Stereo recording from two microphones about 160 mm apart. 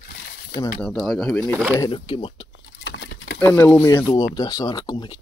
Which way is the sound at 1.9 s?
35° left (ahead or behind).